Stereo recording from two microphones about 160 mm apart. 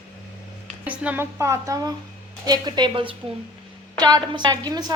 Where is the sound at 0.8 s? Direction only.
10° right (ahead or behind).